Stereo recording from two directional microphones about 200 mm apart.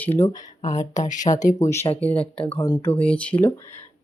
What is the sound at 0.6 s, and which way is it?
Speech, 35° left (ahead or behind).